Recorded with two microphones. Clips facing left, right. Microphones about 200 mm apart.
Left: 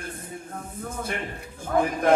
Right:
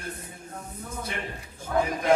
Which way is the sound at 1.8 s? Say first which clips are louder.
Left 2 dB; 55° left (ahead or behind).